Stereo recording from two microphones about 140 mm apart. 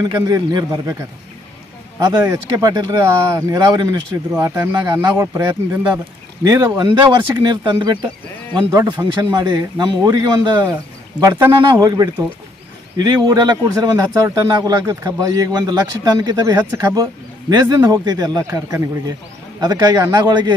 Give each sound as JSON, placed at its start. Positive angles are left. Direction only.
{"t": 0.0, "sound": "a man's voice", "side_deg": -30}
{"t": 2.0, "sound": "a man's voice", "side_deg": -25}